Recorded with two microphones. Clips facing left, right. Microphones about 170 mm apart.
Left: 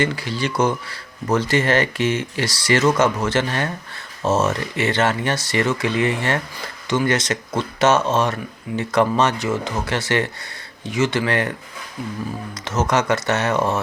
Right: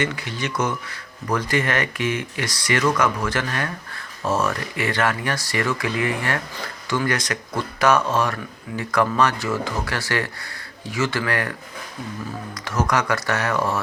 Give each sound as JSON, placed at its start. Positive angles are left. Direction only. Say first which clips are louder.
{"t": 0.0, "sound": "speech", "louder": "left 4 dB", "side_deg": 30}
{"t": 12.6, "sound": "speech", "louder": "left 3 dB", "side_deg": 25}